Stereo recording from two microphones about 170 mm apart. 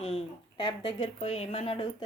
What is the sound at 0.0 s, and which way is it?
Speech, 35° left (ahead or behind).